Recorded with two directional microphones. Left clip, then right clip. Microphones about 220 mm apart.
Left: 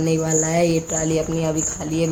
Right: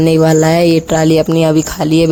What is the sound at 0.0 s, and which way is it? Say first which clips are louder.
Speech: right 11 dB; 40° right (ahead or behind).